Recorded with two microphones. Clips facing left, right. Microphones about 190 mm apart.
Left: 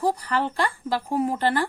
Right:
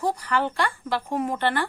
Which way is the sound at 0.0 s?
35° left (ahead or behind).